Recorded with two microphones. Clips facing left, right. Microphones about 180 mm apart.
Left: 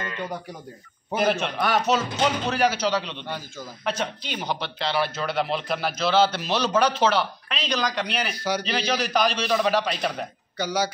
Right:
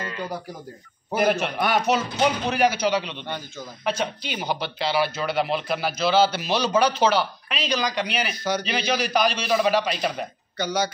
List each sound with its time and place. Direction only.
1.1 s a man's voice: 15° right (ahead or behind)
3.0 s speech: centre (ahead or behind)
10.6 s speech: 10° left (ahead or behind)